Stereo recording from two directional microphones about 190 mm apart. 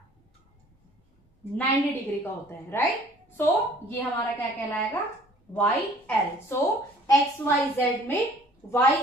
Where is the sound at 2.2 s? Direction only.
15° left (ahead or behind).